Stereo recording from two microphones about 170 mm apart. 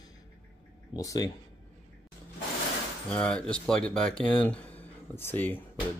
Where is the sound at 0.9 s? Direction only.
20° left (ahead or behind).